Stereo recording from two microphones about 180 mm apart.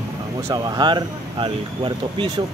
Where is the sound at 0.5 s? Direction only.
25° right (ahead or behind).